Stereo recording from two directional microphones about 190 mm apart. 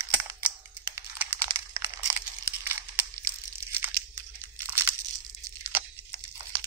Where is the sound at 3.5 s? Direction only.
10° right (ahead or behind).